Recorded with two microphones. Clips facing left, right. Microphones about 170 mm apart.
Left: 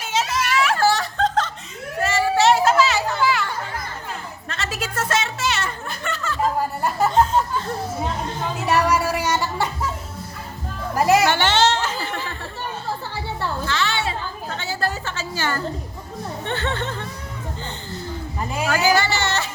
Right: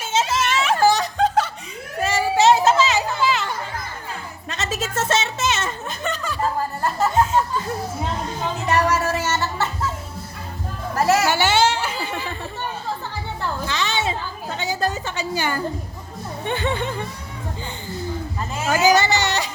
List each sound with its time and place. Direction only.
0.0 s music: 25° right (ahead or behind)
2.0 s children playing: 15° right (ahead or behind)
4.4 s music: 20° right (ahead or behind)
8.6 s a sound: 10° left (ahead or behind)
10.9 s music: 15° left (ahead or behind)
11.3 s a sound: 10° right (ahead or behind)
13.7 s chatter: 20° right (ahead or behind)
16.4 s speech: 15° right (ahead or behind)
18.7 s music: 20° right (ahead or behind)